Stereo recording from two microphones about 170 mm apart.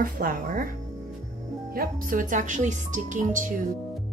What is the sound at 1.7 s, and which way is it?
A woman's voice, 50° right (ahead or behind).